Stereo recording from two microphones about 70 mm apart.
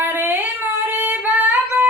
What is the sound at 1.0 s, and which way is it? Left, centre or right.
Singing, right.